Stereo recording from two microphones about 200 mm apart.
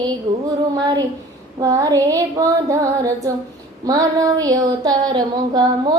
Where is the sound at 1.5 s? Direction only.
20° right (ahead or behind).